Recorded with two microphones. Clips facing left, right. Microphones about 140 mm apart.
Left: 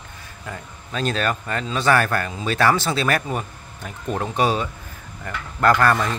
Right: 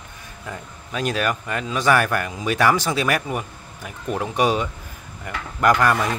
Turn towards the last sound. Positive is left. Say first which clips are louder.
# even
turn(degrees=-15)  # may be behind; listen again after turning